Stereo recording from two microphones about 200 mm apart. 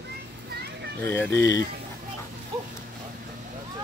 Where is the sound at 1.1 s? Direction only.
10° left (ahead or behind).